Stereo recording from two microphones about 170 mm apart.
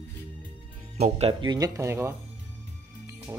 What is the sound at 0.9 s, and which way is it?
Speech, 40° right (ahead or behind).